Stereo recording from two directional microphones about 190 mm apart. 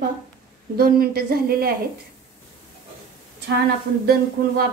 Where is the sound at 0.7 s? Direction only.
55° right (ahead or behind).